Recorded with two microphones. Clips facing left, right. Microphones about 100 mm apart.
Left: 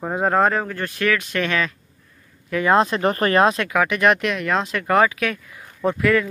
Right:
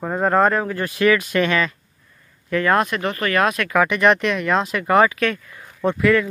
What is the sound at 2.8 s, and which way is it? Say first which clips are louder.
Speech: left 3 dB; 35° left (ahead or behind).